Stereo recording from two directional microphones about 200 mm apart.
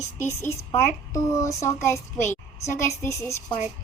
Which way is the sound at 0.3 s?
15° left (ahead or behind).